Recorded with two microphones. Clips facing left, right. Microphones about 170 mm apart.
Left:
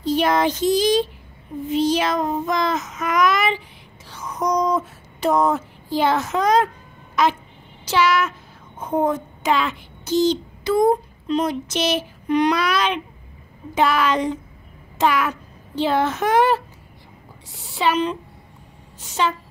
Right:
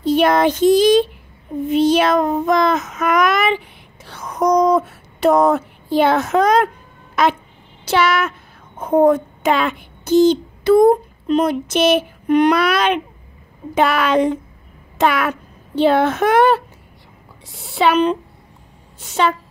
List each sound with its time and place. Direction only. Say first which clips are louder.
0.0 s speech: right 5 dB; 60° right (ahead or behind)
1.7 s child singing: right 5 dB; 60° right (ahead or behind)
7.8 s a woman's voice: right 2 dB; 60° right (ahead or behind)